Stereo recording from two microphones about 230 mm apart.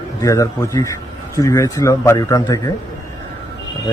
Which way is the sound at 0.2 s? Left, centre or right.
Centre.